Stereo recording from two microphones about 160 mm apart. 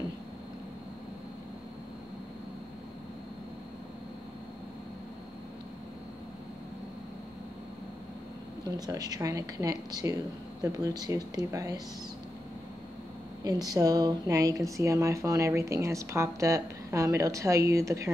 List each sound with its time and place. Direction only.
8.7 s speech: 25° right (ahead or behind)
13.4 s speech: 25° right (ahead or behind)